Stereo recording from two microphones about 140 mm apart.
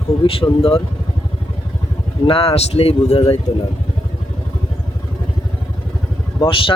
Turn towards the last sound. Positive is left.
turn(degrees=40)  # may be behind; listen again after turning